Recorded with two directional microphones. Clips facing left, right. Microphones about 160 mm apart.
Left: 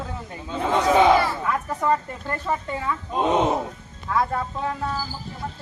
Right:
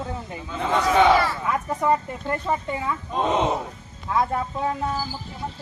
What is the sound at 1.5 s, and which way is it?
A woman's voice, 10° right (ahead or behind).